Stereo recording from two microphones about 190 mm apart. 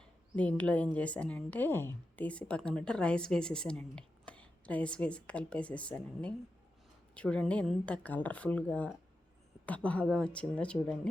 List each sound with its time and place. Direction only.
0.0 s a woman's voice: 5° left (ahead or behind)